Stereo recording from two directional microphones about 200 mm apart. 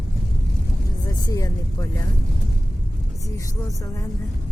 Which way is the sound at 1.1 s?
15° left (ahead or behind).